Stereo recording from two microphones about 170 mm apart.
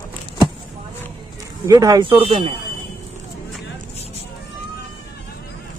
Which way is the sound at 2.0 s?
30° right (ahead or behind).